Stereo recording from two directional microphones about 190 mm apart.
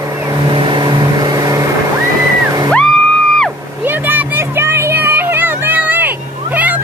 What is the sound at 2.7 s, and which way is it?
Music, 5° left (ahead or behind).